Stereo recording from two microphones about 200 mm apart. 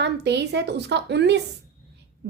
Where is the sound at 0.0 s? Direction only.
60° right (ahead or behind).